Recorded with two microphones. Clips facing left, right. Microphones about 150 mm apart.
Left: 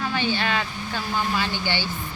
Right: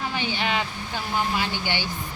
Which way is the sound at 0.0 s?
15° right (ahead or behind).